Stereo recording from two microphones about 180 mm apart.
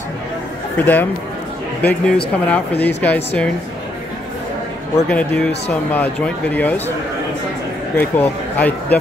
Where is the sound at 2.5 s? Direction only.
10° left (ahead or behind).